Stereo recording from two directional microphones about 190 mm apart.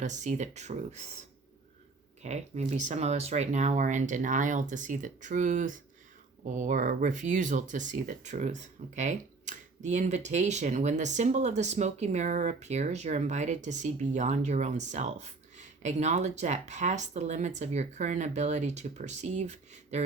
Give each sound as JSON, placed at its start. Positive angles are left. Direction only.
{"t": 0.0, "sound": "speech", "side_deg": -40}
{"t": 2.2, "sound": "speech", "side_deg": -35}